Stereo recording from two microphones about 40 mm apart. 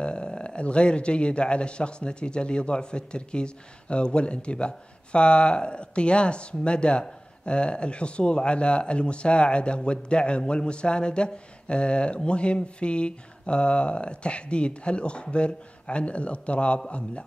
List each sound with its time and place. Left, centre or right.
0.0 s a man's voice: left